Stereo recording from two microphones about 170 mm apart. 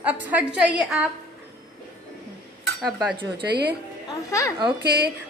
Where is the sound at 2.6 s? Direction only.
5° right (ahead or behind).